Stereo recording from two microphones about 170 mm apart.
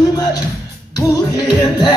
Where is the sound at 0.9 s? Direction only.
25° left (ahead or behind).